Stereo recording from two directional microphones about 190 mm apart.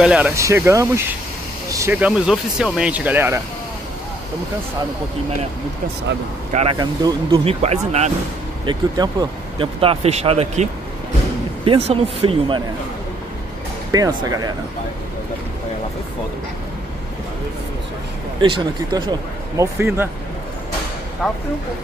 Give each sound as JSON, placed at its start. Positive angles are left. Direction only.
{"t": 0.0, "sound": "speech", "side_deg": -5}
{"t": 6.5, "sound": "speech", "side_deg": -30}
{"t": 8.6, "sound": "speech", "side_deg": -20}
{"t": 13.9, "sound": "speech", "side_deg": -20}
{"t": 18.4, "sound": "speech", "side_deg": -25}
{"t": 21.2, "sound": "speech", "side_deg": 0}